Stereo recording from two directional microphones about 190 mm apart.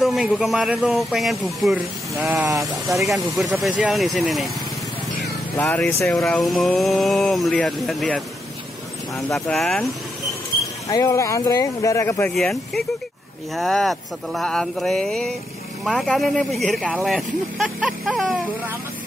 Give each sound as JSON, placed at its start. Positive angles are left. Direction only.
{"t": 0.0, "sound": "speech", "side_deg": 0}
{"t": 5.6, "sound": "speech", "side_deg": 10}
{"t": 10.9, "sound": "speech", "side_deg": 20}
{"t": 12.4, "sound": "speech", "side_deg": 0}